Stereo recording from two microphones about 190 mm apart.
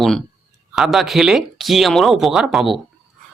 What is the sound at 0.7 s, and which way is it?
Speech, centre (ahead or behind).